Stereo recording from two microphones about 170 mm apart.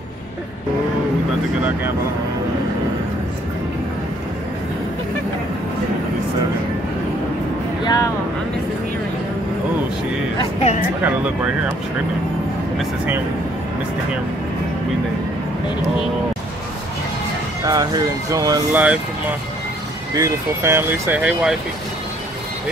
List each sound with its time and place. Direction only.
7.8 s vehicle: 25° left (ahead or behind)
11.1 s speech: 10° right (ahead or behind)
12.7 s speech: 10° right (ahead or behind)
17.6 s speech: 20° right (ahead or behind)
18.7 s speech: 10° right (ahead or behind)
20.2 s speech: 15° right (ahead or behind)